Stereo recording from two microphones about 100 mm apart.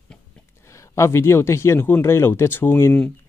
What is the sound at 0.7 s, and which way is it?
Speech, 30° left (ahead or behind).